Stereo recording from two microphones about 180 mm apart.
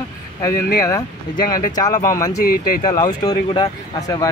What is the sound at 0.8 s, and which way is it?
Speech, 20° left (ahead or behind).